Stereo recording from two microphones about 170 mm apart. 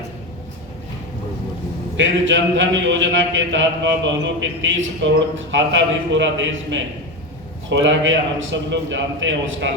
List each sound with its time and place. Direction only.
2.0 s a man's voice: 90° right